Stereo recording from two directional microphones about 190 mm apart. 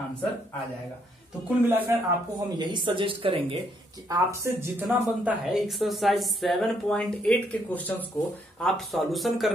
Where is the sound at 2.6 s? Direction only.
25° right (ahead or behind); by 9.6 s centre (ahead or behind).